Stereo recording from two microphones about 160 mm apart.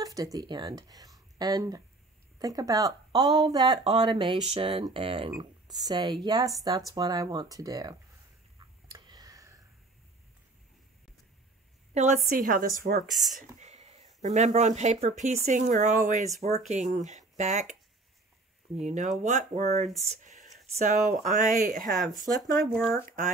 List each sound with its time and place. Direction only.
0.0 s speech: 20° right (ahead or behind)
8.5 s a sound: 25° right (ahead or behind)
11.9 s a woman's voice: 45° right (ahead or behind)
12.3 s a woman's voice: 65° right (ahead or behind)
13.0 s speech: centre (ahead or behind)
13.4 s speech: 45° right (ahead or behind)
18.8 s speech: 45° right (ahead or behind)
21.8 s speech: centre (ahead or behind)